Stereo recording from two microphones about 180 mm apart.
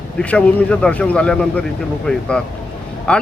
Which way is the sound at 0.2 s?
5° left (ahead or behind).